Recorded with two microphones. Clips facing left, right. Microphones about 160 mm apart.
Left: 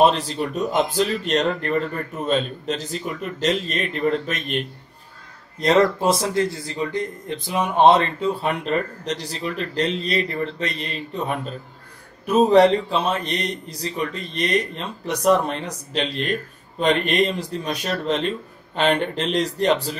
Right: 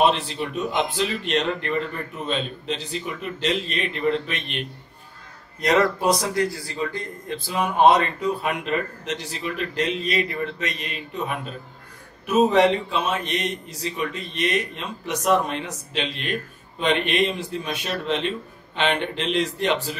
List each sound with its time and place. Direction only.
0.0 s a man's voice: 40° left (ahead or behind)
5.6 s a man's voice: 30° left (ahead or behind)